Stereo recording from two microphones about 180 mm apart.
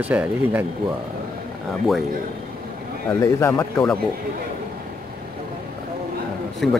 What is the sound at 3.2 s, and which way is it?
Speech, 15° left (ahead or behind).